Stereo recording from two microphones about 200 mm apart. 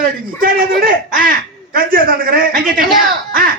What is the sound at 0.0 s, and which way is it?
A man's voice, 45° right (ahead or behind).